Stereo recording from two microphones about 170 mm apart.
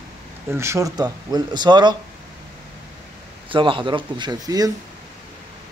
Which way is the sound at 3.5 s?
30° right (ahead or behind).